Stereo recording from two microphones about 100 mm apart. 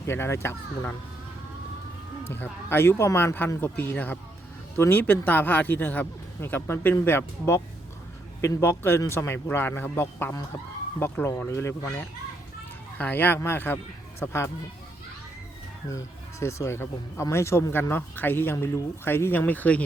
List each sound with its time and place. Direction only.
0.0 s speech: 25° left (ahead or behind)
2.2 s speech: 20° left (ahead or behind)
15.9 s speech: 30° left (ahead or behind); by 19.8 s 15° left (ahead or behind)